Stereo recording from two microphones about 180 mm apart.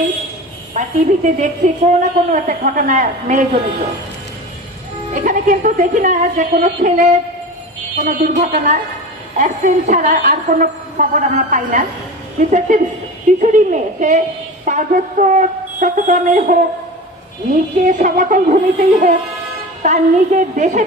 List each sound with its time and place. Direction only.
0.7 s a woman's voice: 45° right (ahead or behind)
5.1 s a woman's voice: 45° right (ahead or behind)
17.7 s a woman's voice: 45° right (ahead or behind)